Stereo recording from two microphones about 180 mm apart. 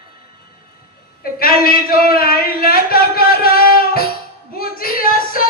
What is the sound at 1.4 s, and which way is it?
Speech, 55° left (ahead or behind).